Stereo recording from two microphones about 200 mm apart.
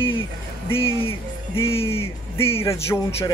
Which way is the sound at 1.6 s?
30° left (ahead or behind).